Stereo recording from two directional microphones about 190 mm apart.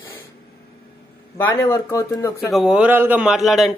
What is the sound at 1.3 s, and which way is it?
Speech, 15° left (ahead or behind).